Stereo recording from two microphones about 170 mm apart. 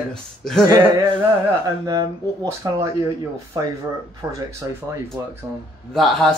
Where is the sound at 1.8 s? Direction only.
20° right (ahead or behind).